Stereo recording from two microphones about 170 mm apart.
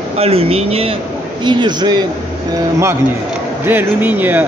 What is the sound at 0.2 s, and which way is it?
A man's voice, 35° right (ahead or behind).